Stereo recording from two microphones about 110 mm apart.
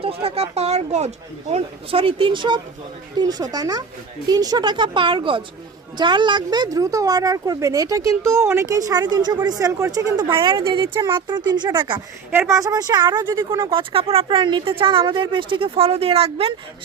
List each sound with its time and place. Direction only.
0.0 s speech: 60° right (ahead or behind)
3.2 s speech: 35° right (ahead or behind)
10.2 s speech: 45° right (ahead or behind)
12.3 s speech: 25° right (ahead or behind); by 13.6 s 45° right (ahead or behind)
13.7 s speech: 55° right (ahead or behind)